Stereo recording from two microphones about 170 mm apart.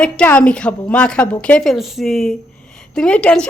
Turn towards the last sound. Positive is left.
turn(degrees=5)  # may be behind; listen again after turning